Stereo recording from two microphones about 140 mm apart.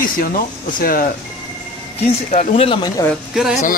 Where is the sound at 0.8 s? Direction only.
90° left.